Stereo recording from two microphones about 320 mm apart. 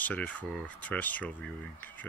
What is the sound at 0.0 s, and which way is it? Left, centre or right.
Speech, centre.